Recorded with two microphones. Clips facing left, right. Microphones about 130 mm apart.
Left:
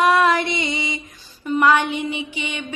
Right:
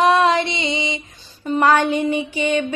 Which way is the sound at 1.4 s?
35° right (ahead or behind).